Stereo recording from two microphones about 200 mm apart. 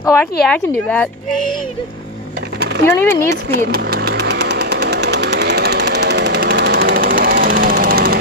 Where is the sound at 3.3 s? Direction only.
50° right (ahead or behind).